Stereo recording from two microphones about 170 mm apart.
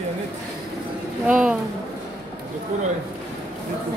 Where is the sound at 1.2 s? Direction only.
5° right (ahead or behind).